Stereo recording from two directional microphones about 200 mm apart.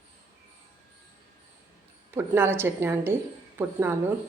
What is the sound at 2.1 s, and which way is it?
A woman's voice, 10° right (ahead or behind).